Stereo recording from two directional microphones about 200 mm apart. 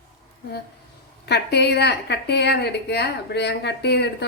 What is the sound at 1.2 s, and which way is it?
A woman's voice, 55° left (ahead or behind).